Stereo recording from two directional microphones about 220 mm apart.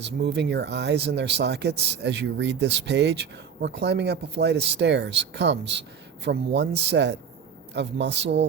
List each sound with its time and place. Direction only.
0.0 s speech: 50° right (ahead or behind)